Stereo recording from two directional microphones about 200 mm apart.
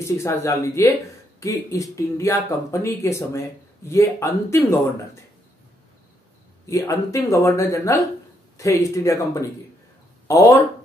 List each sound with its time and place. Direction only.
0.0 s speech: 15° left (ahead or behind)
6.6 s speech: 15° left (ahead or behind)